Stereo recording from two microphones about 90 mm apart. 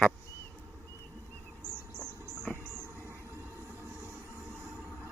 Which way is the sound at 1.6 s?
25° right (ahead or behind).